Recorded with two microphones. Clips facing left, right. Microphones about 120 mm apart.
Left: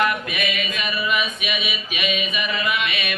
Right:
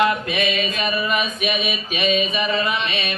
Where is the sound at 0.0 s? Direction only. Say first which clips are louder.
Right 3 dB; 25° right (ahead or behind).